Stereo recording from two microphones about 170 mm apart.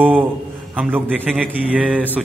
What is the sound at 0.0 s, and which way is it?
A man's voice, 10° right (ahead or behind).